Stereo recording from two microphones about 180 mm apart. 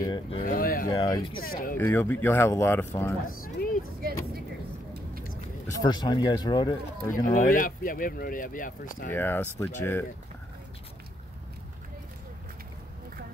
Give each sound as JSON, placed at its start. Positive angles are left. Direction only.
{"t": 0.0, "sound": "speech", "side_deg": 25}
{"t": 0.5, "sound": "speech", "side_deg": 55}
{"t": 0.8, "sound": "speech", "side_deg": 20}
{"t": 1.4, "sound": "speech", "side_deg": 55}
{"t": 1.8, "sound": "speech", "side_deg": 10}
{"t": 3.3, "sound": "speech", "side_deg": 50}
{"t": 5.7, "sound": "speech", "side_deg": 20}
{"t": 7.4, "sound": "speech", "side_deg": 50}
{"t": 9.1, "sound": "speech", "side_deg": 10}